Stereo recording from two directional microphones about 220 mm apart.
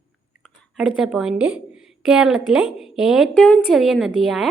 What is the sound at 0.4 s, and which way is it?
A woman's voice, centre (ahead or behind).